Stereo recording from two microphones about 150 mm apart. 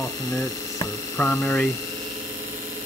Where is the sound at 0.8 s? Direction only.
15° left (ahead or behind).